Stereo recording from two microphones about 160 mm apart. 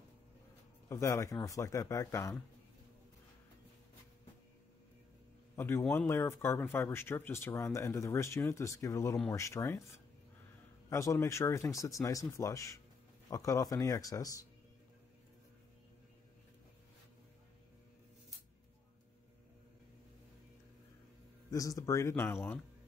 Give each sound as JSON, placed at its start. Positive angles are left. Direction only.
{"t": 0.8, "sound": "speech", "side_deg": 20}
{"t": 5.6, "sound": "speech", "side_deg": 15}
{"t": 21.5, "sound": "speech", "side_deg": 20}